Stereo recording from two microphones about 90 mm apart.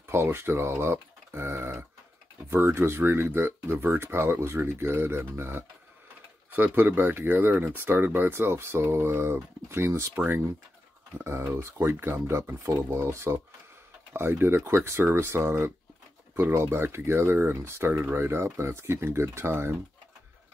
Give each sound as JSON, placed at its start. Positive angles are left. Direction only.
{"t": 0.0, "sound": "speech", "side_deg": -25}
{"t": 11.5, "sound": "speech", "side_deg": -25}